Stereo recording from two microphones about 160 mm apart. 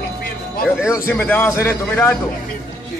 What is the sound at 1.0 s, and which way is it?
A man's voice, 15° left (ahead or behind).